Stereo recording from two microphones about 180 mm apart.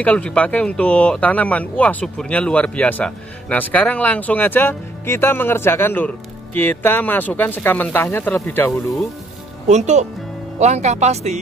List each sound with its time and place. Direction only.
0.0 s speech: 5° left (ahead or behind)
9.7 s speech: 40° right (ahead or behind)